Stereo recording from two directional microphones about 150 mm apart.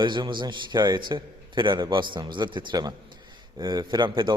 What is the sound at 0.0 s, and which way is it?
A man's voice, 30° right (ahead or behind).